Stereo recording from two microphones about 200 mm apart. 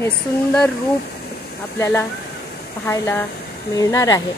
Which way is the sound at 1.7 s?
15° left (ahead or behind).